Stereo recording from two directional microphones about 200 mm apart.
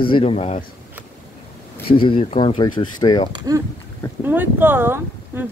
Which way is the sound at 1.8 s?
25° left (ahead or behind).